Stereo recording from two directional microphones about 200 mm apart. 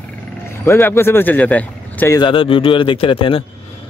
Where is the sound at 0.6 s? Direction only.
10° left (ahead or behind).